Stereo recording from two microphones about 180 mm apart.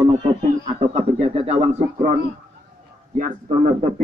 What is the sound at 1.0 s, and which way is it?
A man's voice, 35° right (ahead or behind).